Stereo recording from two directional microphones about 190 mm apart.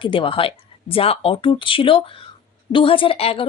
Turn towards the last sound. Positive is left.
turn(degrees=30)  # may be behind; listen again after turning